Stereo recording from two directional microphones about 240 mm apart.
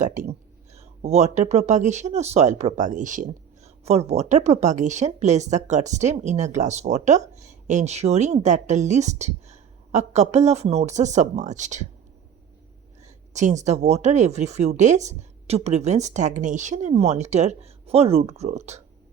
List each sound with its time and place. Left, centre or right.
0.0 s speech: right
13.0 s speech: right